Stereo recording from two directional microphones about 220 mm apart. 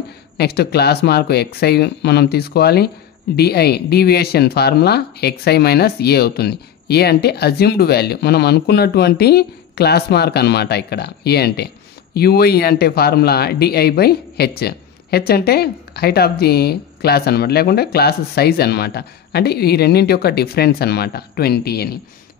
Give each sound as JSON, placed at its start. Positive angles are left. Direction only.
{"t": 0.4, "sound": "speech", "side_deg": 45}